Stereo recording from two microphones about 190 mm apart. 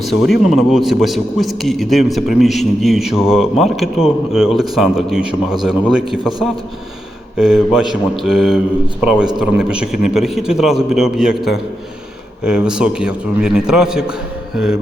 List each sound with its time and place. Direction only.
0.3 s a man's voice: centre (ahead or behind)